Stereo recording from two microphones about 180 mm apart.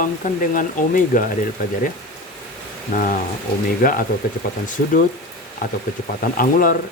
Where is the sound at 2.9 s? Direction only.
45° left (ahead or behind).